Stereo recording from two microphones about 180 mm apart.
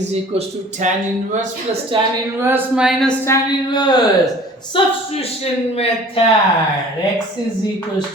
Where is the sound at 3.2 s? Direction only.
20° left (ahead or behind).